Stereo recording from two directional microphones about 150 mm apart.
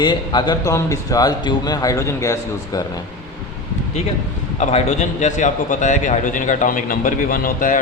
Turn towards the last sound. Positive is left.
turn(degrees=65)  # may be behind; listen again after turning